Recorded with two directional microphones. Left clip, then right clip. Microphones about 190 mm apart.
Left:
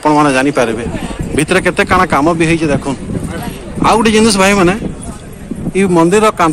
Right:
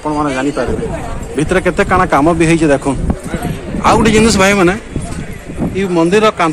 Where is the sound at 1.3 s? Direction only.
5° left (ahead or behind).